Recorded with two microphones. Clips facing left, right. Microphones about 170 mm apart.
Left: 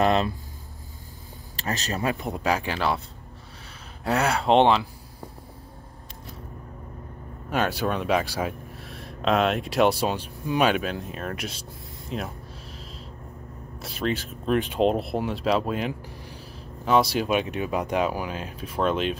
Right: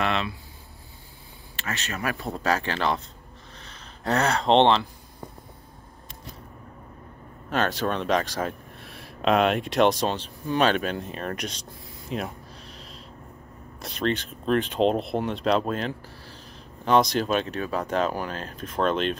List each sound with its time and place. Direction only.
0.0 s speech: 40° left (ahead or behind)
1.6 s speech: 35° left (ahead or behind)
2.0 s speech: 20° left (ahead or behind)
7.4 s speech: 10° left (ahead or behind)
13.7 s speech: 5° left (ahead or behind)